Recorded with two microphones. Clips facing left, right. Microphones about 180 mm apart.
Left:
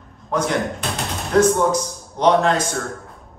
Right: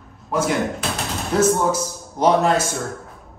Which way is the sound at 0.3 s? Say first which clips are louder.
Even; 5° right (ahead or behind).